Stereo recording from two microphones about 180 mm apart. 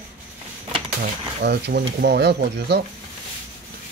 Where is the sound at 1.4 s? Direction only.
60° right (ahead or behind).